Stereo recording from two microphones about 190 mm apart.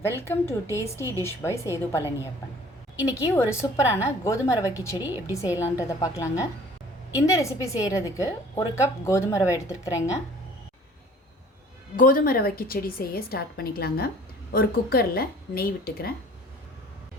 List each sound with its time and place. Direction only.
0.0 s speech: 15° left (ahead or behind)
11.9 s a woman's voice: 50° left (ahead or behind)